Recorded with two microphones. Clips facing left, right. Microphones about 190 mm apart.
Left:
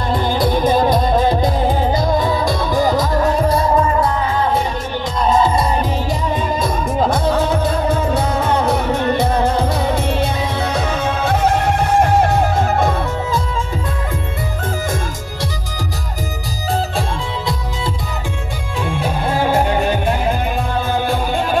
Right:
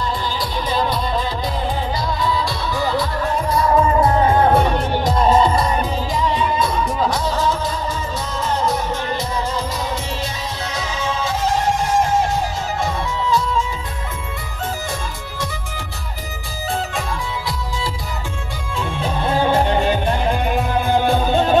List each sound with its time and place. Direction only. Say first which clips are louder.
0.1 s music: left 8 dB; 55° left (ahead or behind)
4.1 s music: right 3 dB; 45° right (ahead or behind); by 4.8 s 60° right (ahead or behind)
6.2 s music: right 2 dB; 45° left (ahead or behind)
19.4 s music: left 1 dB; 10° left (ahead or behind)
20.9 s music: right 4 dB; 20° right (ahead or behind)